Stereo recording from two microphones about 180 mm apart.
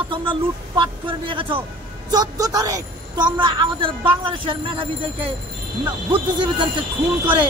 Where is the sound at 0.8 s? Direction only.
30° right (ahead or behind).